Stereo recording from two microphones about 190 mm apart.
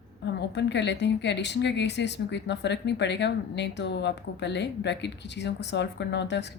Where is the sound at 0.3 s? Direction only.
65° left (ahead or behind).